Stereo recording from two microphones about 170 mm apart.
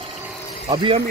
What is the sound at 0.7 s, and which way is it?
Speech, 30° right (ahead or behind).